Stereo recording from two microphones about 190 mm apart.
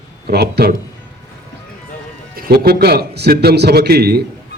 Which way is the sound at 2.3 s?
50° right (ahead or behind).